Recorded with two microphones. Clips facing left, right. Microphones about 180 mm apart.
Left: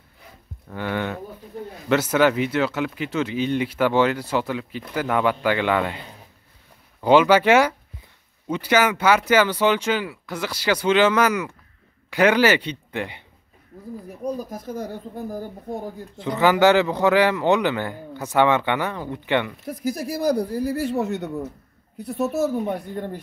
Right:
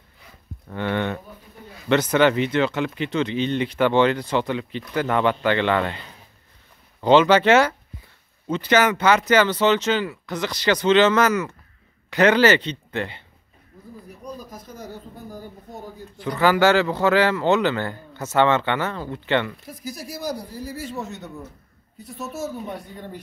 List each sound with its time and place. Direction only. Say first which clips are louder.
0.7 s speech: right 2 dB; 5° left (ahead or behind)
7.0 s speech: even; 10° left (ahead or behind)
14.2 s speech: left 9 dB; 55° left (ahead or behind)
16.2 s speech: left 1 dB; 20° left (ahead or behind)
19.7 s speech: left 8 dB; 60° left (ahead or behind)